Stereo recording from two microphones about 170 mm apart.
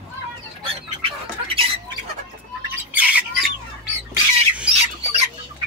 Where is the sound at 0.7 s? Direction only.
35° right (ahead or behind).